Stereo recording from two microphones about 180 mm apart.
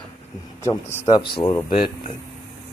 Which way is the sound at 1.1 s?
25° left (ahead or behind).